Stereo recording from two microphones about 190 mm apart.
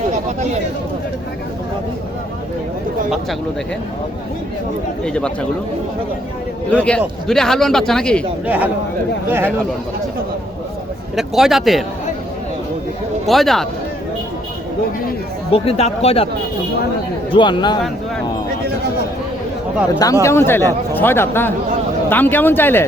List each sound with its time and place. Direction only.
0.1 s a sound: 40° right (ahead or behind)
5.0 s speech: 5° left (ahead or behind)
6.7 s speech: 5° left (ahead or behind)
8.4 s speech: 10° right (ahead or behind)
11.2 s speech: centre (ahead or behind)
13.2 s speech: centre (ahead or behind)
15.5 s speech: 30° left (ahead or behind)
17.3 s speech: 25° left (ahead or behind)
20.2 s speech: 10° left (ahead or behind)